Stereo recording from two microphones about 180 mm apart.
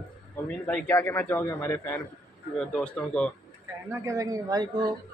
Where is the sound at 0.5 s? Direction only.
5° left (ahead or behind).